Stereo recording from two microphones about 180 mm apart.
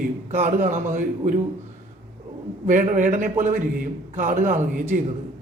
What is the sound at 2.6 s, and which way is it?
A man's voice, 50° right (ahead or behind).